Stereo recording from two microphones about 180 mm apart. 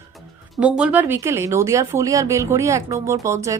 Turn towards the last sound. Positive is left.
turn(degrees=-15)  # may be behind; listen again after turning